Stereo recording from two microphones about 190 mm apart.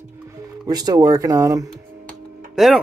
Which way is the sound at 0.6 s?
20° right (ahead or behind).